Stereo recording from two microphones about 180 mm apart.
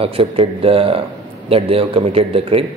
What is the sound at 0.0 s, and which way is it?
A man's voice, 30° right (ahead or behind).